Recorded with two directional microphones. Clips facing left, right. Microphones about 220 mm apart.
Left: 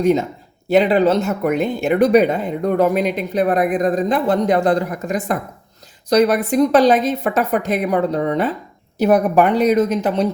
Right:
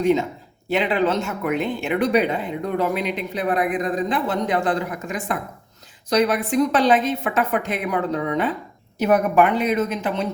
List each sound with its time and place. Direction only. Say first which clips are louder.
0.0 s speech: left 3 dB; 45° left (ahead or behind)